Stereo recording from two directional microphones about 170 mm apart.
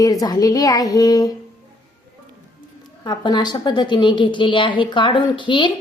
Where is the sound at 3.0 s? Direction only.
25° left (ahead or behind).